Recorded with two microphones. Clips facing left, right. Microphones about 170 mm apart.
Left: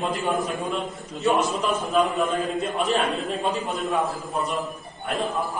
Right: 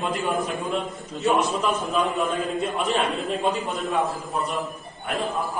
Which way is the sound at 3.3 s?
Centre (ahead or behind).